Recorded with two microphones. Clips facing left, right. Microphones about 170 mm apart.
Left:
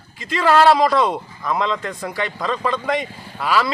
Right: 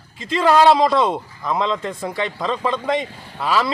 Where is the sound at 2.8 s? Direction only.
25° right (ahead or behind).